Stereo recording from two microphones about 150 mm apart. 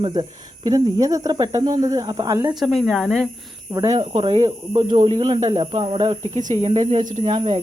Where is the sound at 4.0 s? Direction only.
35° right (ahead or behind).